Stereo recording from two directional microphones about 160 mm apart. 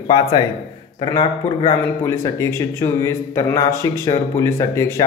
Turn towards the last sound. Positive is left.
turn(degrees=20)  # may be behind; listen again after turning